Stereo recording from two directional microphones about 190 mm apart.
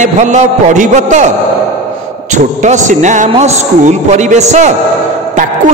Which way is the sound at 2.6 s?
40° right (ahead or behind).